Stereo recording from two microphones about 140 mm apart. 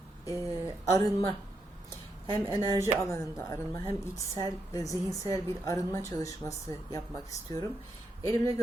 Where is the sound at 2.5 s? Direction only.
20° left (ahead or behind).